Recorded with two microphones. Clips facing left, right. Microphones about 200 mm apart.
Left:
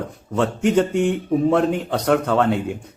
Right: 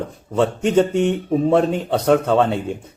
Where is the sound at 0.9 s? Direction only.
10° left (ahead or behind).